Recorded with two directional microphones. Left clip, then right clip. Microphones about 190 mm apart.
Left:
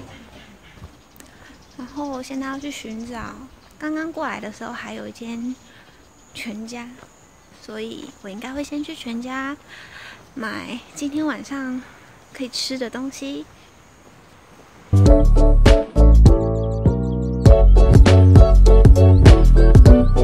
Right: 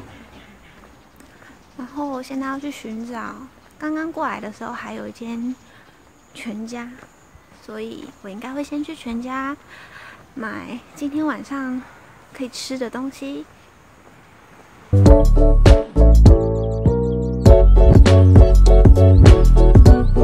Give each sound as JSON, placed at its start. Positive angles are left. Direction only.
{"t": 1.8, "sound": "speech", "side_deg": -10}
{"t": 7.6, "sound": "speech", "side_deg": 0}
{"t": 15.0, "sound": "music", "side_deg": 0}